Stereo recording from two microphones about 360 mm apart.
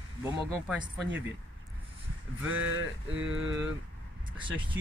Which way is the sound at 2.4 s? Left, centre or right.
Right.